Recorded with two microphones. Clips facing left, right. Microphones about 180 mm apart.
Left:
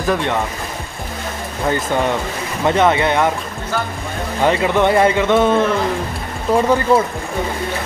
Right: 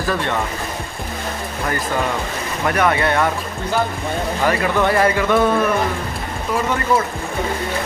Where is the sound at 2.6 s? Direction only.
25° left (ahead or behind).